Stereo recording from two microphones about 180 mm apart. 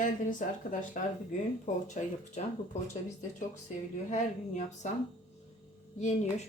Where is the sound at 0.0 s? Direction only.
45° left (ahead or behind).